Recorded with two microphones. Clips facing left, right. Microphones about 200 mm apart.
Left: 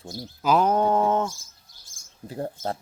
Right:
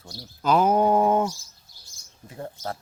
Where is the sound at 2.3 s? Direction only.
35° left (ahead or behind).